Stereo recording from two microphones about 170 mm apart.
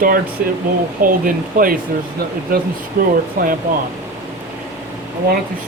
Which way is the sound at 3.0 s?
55° right (ahead or behind).